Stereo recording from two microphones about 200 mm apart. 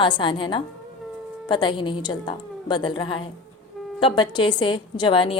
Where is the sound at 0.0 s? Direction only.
25° left (ahead or behind).